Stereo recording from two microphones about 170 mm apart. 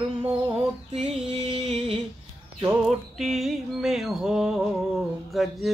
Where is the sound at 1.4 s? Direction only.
35° right (ahead or behind).